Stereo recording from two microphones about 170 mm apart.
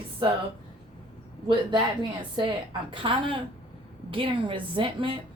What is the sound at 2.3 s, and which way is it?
A woman's voice, 25° right (ahead or behind).